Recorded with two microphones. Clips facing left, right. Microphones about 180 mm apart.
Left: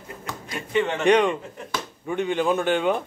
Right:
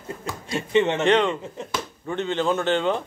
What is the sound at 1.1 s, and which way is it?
A man's voice, 15° left (ahead or behind).